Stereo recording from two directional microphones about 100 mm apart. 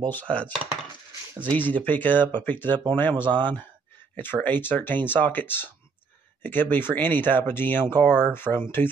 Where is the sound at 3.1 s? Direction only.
50° right (ahead or behind).